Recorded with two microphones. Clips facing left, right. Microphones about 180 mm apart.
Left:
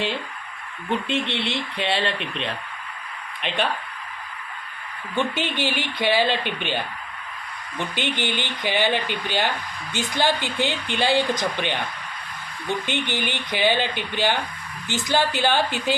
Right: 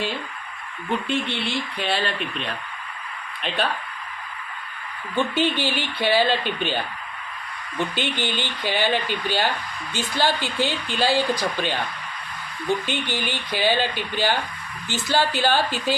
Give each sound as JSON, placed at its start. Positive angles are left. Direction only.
{"t": 1.0, "sound": "speech", "side_deg": 25}
{"t": 5.1, "sound": "speech", "side_deg": 15}
{"t": 7.9, "sound": "speech", "side_deg": 15}
{"t": 12.8, "sound": "speech", "side_deg": 20}